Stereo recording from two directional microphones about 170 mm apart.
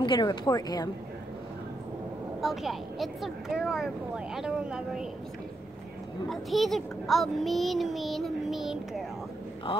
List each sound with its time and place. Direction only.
0.0 s a woman's voice: 25° left (ahead or behind)
2.4 s speech: centre (ahead or behind)
6.2 s speech: centre (ahead or behind)